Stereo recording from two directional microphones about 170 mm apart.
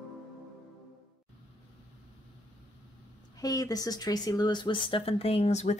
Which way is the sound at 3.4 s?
20° left (ahead or behind).